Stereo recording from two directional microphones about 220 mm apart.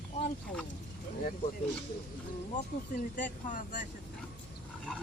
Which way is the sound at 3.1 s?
35° left (ahead or behind).